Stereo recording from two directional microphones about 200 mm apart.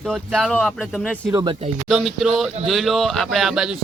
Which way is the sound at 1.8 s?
Centre (ahead or behind).